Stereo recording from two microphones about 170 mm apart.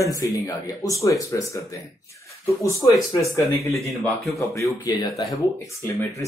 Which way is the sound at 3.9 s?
Centre (ahead or behind).